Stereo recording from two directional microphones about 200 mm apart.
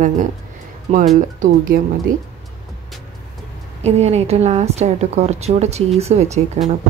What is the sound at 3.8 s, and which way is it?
A woman's voice, 30° right (ahead or behind).